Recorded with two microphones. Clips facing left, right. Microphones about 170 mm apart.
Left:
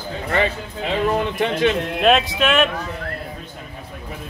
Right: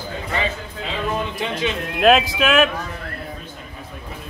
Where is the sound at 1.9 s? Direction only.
Centre (ahead or behind).